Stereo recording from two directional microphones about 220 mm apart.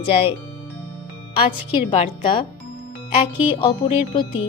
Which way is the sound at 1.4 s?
25° left (ahead or behind).